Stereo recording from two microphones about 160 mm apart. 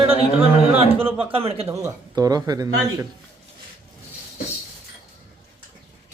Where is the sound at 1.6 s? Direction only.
20° right (ahead or behind).